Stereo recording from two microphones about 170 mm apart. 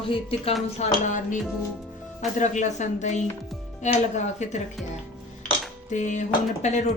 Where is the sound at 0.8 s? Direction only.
45° left (ahead or behind).